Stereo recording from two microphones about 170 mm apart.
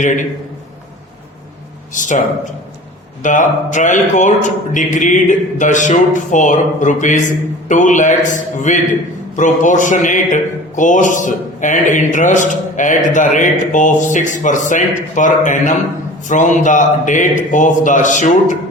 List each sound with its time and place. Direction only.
1.9 s a man's voice: 50° left (ahead or behind)